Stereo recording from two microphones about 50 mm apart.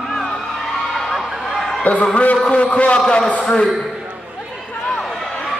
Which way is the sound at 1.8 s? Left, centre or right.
Left.